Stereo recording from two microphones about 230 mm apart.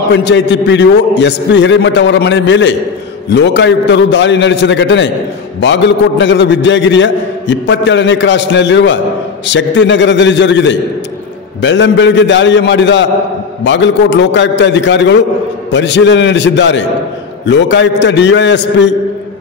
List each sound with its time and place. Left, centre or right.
0.1 s a man's voice: left